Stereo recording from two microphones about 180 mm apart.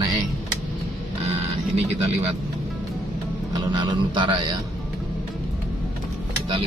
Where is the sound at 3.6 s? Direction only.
25° right (ahead or behind).